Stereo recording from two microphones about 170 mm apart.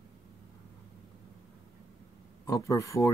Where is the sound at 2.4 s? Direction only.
20° left (ahead or behind).